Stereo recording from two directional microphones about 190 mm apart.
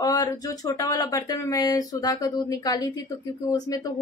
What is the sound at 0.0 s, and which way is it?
Speech, 20° left (ahead or behind).